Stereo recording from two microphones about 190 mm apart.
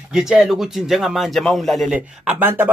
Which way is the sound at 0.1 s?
5° right (ahead or behind).